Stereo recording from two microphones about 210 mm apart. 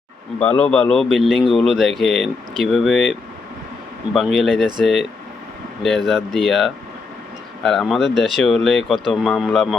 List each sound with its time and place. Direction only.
0.3 s speech: 5° left (ahead or behind)
6.1 s speech: centre (ahead or behind)